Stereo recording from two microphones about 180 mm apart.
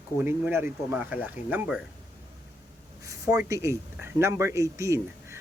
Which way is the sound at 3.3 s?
15° right (ahead or behind).